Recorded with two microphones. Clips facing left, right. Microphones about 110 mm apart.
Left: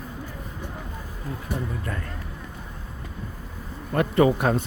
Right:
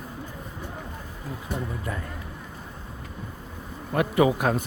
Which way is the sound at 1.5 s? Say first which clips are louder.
Even; 10° right (ahead or behind).